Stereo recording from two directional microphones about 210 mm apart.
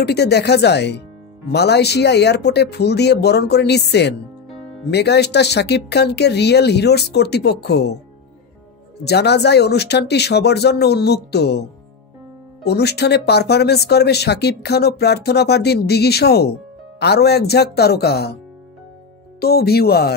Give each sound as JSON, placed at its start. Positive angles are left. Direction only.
{"t": 0.0, "sound": "speech", "side_deg": 50}
{"t": 9.0, "sound": "speech", "side_deg": 50}
{"t": 12.6, "sound": "speech", "side_deg": 50}
{"t": 19.4, "sound": "speech", "side_deg": 50}